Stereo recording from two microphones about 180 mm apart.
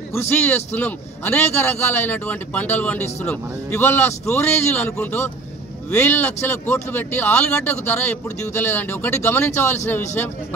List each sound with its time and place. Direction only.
0.1 s a man's voice: 15° left (ahead or behind)